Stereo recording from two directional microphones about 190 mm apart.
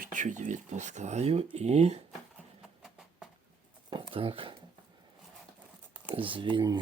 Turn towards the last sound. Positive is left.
turn(degrees=-20)  # may be behind; listen again after turning